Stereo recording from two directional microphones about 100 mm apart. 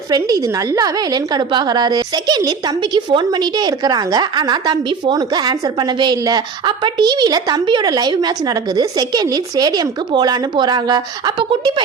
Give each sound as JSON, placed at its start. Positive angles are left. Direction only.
{"t": 0.1, "sound": "a woman's voice", "side_deg": -35}